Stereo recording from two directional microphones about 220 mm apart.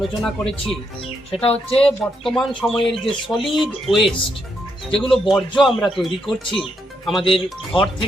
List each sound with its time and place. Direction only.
0.2 s a man's voice: centre (ahead or behind)
1.3 s speech: 30° left (ahead or behind)
1.7 s a man's voice: 5° left (ahead or behind)
7.3 s speech: 25° left (ahead or behind)